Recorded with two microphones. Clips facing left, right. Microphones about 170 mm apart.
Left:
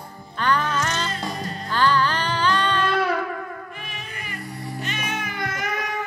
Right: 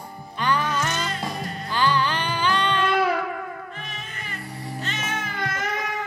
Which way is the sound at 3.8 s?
15° left (ahead or behind).